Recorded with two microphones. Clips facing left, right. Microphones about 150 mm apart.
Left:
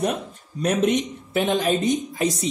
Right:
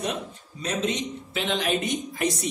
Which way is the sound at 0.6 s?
55° left (ahead or behind).